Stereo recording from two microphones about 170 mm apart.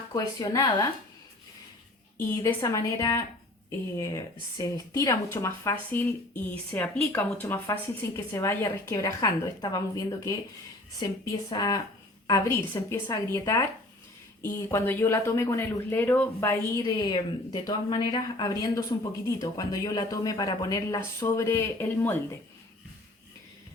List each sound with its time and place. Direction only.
0.1 s speech: 20° left (ahead or behind)
2.1 s speech: 20° left (ahead or behind)
11.4 s speech: 20° left (ahead or behind)